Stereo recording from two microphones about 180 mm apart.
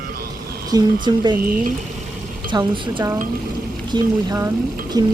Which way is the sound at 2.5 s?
20° right (ahead or behind).